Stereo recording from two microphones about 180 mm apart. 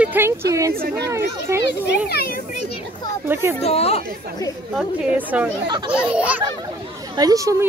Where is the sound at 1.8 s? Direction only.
60° left (ahead or behind).